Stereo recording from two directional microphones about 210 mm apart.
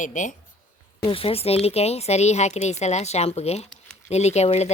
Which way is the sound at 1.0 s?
25° left (ahead or behind).